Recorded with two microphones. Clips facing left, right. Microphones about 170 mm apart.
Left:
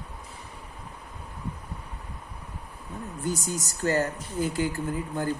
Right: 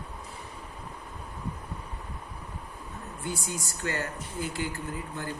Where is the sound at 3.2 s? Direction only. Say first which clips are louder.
Left 5 dB; 40° left (ahead or behind).